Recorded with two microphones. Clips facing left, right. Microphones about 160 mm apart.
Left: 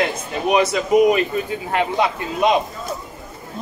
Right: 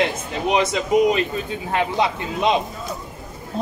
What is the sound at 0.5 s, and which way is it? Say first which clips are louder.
Speech: left 3 dB; 25° right (ahead or behind).